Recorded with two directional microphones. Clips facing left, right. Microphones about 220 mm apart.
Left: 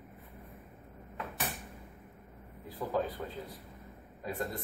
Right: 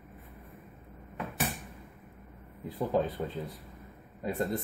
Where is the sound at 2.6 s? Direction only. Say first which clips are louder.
Right 4 dB; 25° right (ahead or behind).